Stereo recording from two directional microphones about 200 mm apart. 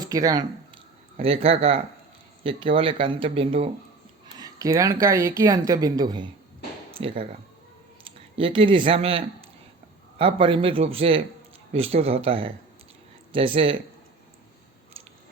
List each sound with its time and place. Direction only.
0.0 s a sound: 15° right (ahead or behind)
1.1 s speech: 30° right (ahead or behind)
8.4 s speech: 25° right (ahead or behind)